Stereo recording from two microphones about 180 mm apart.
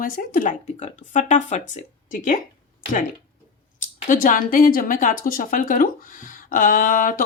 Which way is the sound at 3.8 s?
45° left (ahead or behind).